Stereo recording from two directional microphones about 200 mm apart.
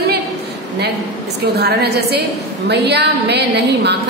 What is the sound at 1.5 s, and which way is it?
A woman's voice, 55° right (ahead or behind).